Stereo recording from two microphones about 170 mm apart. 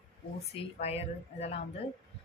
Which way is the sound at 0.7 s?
40° left (ahead or behind).